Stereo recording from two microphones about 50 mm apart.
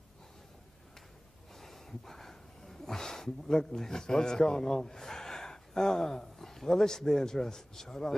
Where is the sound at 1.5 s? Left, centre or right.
Centre.